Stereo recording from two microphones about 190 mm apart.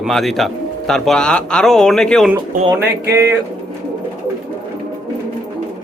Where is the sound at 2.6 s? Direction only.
15° right (ahead or behind).